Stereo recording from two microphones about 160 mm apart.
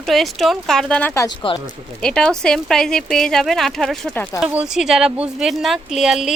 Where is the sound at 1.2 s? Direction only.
30° left (ahead or behind).